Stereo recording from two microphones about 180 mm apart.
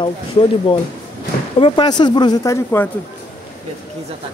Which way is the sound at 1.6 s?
25° left (ahead or behind).